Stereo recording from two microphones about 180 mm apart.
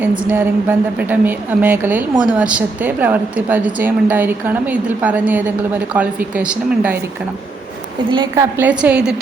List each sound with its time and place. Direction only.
0.2 s a woman's voice: 10° right (ahead or behind)
8.1 s a woman's voice: 25° right (ahead or behind)
8.5 s a woman's voice: 10° right (ahead or behind)